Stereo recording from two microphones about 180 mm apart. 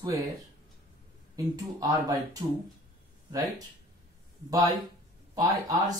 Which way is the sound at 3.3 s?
20° right (ahead or behind).